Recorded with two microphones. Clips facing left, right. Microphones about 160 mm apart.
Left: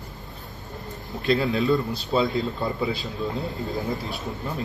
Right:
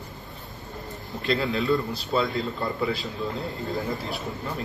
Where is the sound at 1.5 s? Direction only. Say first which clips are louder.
Left 2 dB; 20° left (ahead or behind).